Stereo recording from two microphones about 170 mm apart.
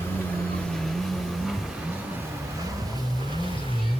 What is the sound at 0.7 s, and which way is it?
Vehicle, centre (ahead or behind).